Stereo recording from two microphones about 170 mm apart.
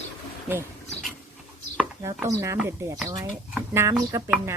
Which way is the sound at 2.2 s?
15° right (ahead or behind).